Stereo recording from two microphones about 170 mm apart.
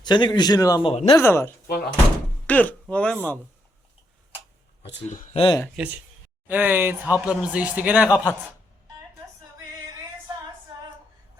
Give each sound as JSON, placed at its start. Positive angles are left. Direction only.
{"t": 0.0, "sound": "a man's voice", "side_deg": 25}
{"t": 1.1, "sound": "speech", "side_deg": 15}
{"t": 1.6, "sound": "speech", "side_deg": 60}
{"t": 2.5, "sound": "speech", "side_deg": 10}
{"t": 4.8, "sound": "speech", "side_deg": 90}
{"t": 5.0, "sound": "speech", "side_deg": 45}
{"t": 5.4, "sound": "a man's voice", "side_deg": 25}
{"t": 5.7, "sound": "speech", "side_deg": -10}